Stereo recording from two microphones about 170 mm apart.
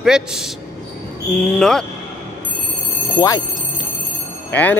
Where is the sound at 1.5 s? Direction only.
5° left (ahead or behind).